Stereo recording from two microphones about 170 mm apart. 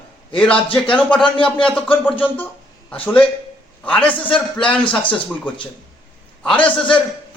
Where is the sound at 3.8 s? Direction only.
5° left (ahead or behind).